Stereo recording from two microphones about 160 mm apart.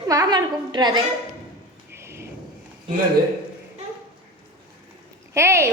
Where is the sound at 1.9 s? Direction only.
15° right (ahead or behind).